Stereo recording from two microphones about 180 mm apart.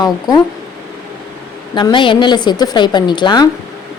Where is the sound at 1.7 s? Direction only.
25° left (ahead or behind).